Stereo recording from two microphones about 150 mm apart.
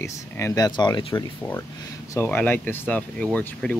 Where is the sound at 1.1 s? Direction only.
15° left (ahead or behind).